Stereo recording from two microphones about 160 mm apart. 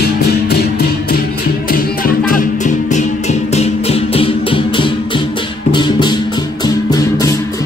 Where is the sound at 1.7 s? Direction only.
60° left (ahead or behind).